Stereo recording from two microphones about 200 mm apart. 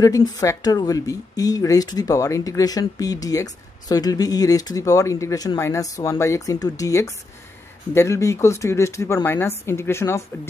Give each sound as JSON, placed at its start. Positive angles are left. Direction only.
{"t": 0.0, "sound": "speech", "side_deg": 15}